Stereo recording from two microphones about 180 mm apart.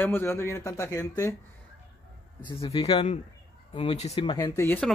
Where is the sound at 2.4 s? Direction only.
30° left (ahead or behind).